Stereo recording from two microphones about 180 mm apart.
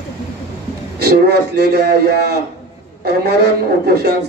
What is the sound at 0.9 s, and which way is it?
A man's voice, 60° right (ahead or behind).